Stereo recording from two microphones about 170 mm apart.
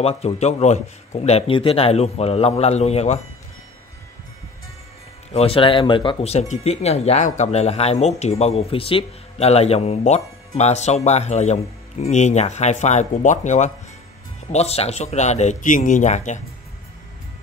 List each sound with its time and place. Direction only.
0.0 s speech: 40° left (ahead or behind)
5.3 s speech: 35° left (ahead or behind)